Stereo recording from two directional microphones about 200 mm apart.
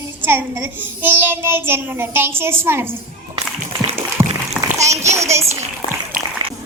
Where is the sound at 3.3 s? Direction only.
20° right (ahead or behind).